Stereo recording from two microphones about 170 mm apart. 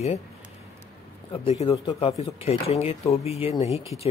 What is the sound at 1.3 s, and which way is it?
Speech, 35° left (ahead or behind).